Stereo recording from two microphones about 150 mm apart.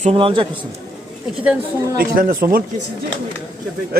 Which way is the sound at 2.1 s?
70° right (ahead or behind).